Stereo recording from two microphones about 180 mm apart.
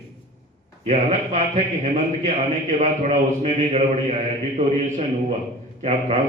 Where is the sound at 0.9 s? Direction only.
40° right (ahead or behind).